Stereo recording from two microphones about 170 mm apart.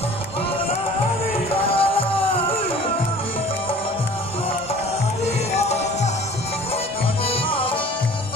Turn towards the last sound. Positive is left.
turn(degrees=35)  # may be behind; listen again after turning